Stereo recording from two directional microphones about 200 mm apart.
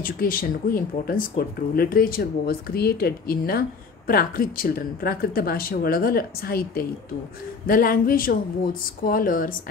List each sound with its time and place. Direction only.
0.0 s speech: 45° left (ahead or behind)